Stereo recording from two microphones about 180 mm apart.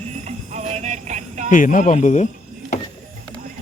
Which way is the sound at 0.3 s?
40° right (ahead or behind).